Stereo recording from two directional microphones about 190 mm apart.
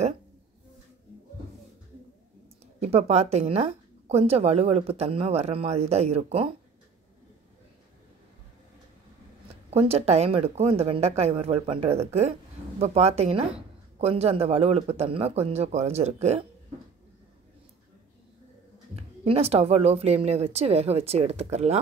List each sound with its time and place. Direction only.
2.8 s speech: 35° right (ahead or behind)
9.7 s speech: 30° right (ahead or behind)
18.9 s speech: 30° right (ahead or behind)